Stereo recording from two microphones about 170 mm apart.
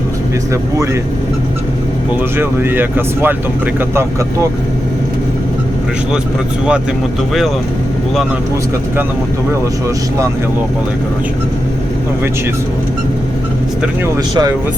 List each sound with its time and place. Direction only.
2.4 s speech: 15° right (ahead or behind)